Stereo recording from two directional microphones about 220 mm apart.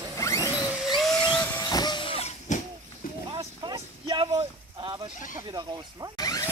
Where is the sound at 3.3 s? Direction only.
20° right (ahead or behind).